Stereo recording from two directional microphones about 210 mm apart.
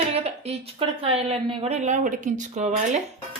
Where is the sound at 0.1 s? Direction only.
30° right (ahead or behind).